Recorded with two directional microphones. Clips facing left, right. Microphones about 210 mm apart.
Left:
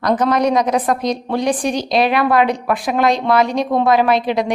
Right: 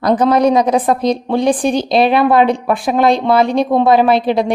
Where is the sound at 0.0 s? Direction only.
30° right (ahead or behind).